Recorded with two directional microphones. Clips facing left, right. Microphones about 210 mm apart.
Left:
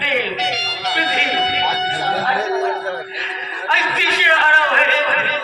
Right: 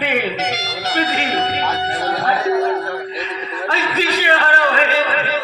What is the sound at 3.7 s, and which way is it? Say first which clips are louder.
A man's voice: right 3 dB; 40° right (ahead or behind).